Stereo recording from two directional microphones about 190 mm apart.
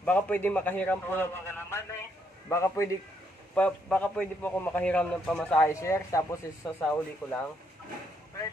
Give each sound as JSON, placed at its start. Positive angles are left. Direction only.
{"t": 0.0, "sound": "a man's voice", "side_deg": 10}